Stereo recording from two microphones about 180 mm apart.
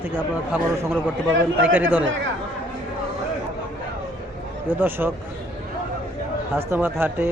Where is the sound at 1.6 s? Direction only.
10° right (ahead or behind).